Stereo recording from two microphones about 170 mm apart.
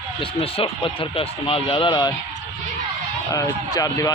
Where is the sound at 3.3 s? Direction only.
20° left (ahead or behind).